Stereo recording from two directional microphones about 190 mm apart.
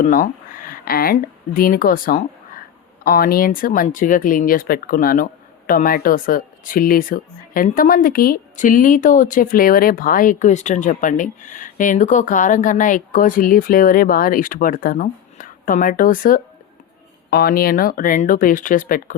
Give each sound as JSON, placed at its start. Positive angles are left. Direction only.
{"t": 0.0, "sound": "speech", "side_deg": 45}